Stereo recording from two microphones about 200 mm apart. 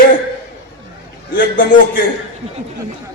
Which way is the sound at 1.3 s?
45° left (ahead or behind).